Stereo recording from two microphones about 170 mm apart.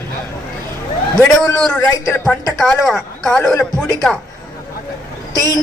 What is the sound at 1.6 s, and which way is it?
A man's voice, 5° left (ahead or behind).